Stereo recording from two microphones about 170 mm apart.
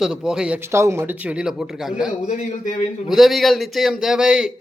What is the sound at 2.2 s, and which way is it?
Speech, 45° left (ahead or behind).